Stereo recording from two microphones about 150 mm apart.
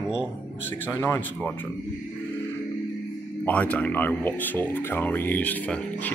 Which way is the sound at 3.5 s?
10° left (ahead or behind).